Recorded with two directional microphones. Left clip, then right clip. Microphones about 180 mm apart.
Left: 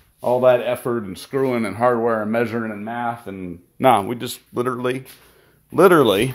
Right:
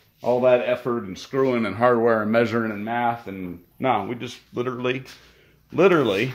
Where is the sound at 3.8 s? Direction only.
55° left (ahead or behind).